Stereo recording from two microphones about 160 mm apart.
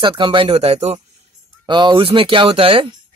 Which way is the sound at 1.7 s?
30° right (ahead or behind).